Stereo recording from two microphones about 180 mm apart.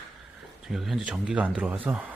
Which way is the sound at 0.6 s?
Centre (ahead or behind).